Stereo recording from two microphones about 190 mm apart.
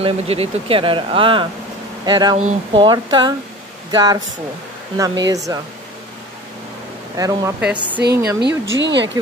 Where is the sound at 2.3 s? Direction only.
30° right (ahead or behind).